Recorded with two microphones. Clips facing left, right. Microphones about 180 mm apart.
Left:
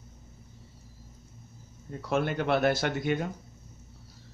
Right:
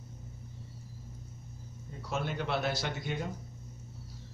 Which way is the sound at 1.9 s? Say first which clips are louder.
Left 7 dB; 60° left (ahead or behind).